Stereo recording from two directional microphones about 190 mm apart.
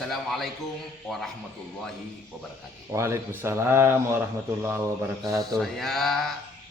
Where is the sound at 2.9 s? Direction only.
15° right (ahead or behind).